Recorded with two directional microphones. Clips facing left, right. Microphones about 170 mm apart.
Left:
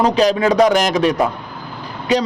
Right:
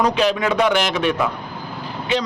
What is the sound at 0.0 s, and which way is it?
A man's voice, 35° left (ahead or behind).